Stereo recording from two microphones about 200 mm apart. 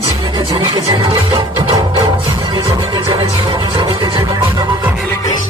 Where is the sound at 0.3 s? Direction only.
20° right (ahead or behind).